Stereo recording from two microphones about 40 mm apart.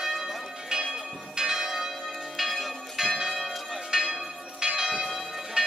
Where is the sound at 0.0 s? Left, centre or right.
Centre.